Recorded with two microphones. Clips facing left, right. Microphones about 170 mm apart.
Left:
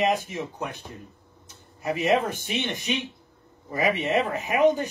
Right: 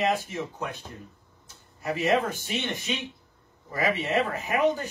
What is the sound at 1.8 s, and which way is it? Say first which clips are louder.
A man's voice: left 2 dB; 20° left (ahead or behind).